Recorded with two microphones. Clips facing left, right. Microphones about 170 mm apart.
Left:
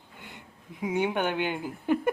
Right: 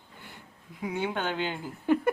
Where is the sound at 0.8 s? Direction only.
20° left (ahead or behind).